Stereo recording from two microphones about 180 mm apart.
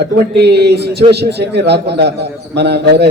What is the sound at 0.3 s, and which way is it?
A man's voice, 65° right (ahead or behind).